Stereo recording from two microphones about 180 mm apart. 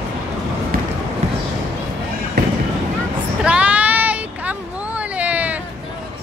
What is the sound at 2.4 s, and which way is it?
Fireworks, 60° right (ahead or behind).